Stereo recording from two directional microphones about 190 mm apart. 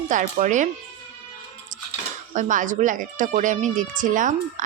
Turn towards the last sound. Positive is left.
turn(degrees=-45)  # may be behind; listen again after turning